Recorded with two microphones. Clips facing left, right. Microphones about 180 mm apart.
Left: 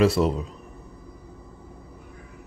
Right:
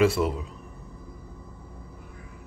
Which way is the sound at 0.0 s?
35° left (ahead or behind).